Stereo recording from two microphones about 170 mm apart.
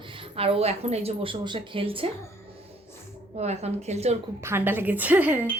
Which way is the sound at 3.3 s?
40° right (ahead or behind).